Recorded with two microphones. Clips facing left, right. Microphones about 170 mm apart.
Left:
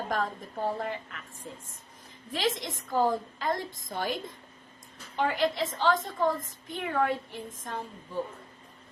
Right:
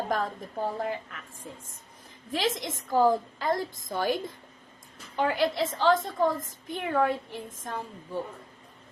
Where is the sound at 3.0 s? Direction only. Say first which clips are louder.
Right 4 dB; 45° right (ahead or behind).